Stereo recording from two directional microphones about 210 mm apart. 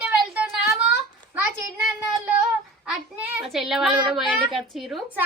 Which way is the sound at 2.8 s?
5° right (ahead or behind).